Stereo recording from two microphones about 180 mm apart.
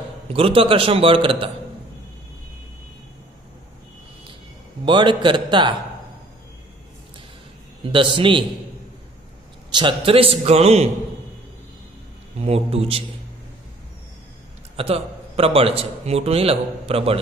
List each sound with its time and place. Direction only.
0.3 s a man's voice: 30° right (ahead or behind)
4.8 s a man's voice: 25° right (ahead or behind)
7.8 s a man's voice: 30° right (ahead or behind)
9.7 s a man's voice: 25° right (ahead or behind)
12.4 s a man's voice: 35° right (ahead or behind)
14.8 s a man's voice: 35° right (ahead or behind)